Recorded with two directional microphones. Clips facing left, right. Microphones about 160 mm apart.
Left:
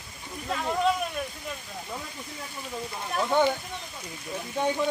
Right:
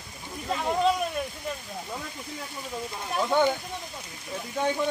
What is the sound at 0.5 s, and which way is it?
Speech, 10° right (ahead or behind).